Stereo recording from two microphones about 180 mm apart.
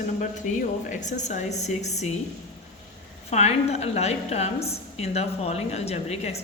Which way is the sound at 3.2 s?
35° left (ahead or behind).